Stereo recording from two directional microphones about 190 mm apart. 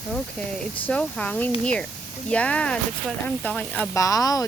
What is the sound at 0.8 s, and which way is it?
Speech, 5° left (ahead or behind).